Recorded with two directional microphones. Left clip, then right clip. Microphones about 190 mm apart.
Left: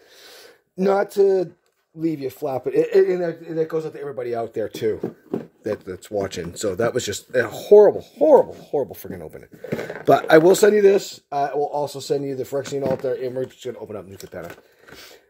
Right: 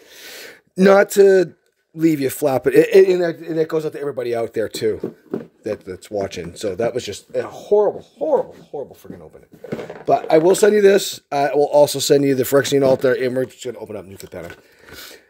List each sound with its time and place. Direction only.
0.2 s a sound: 50° right (ahead or behind)
2.0 s a man's voice: 50° right (ahead or behind); by 5.0 s 20° right (ahead or behind)
5.3 s speech: 5° right (ahead or behind); by 7.4 s 20° left (ahead or behind)
7.4 s speech: 40° left (ahead or behind)
10.0 s speech: 30° left (ahead or behind)
10.8 s speech: 35° right (ahead or behind)
11.2 s speech: 55° right (ahead or behind)
13.6 s speech: 25° right (ahead or behind)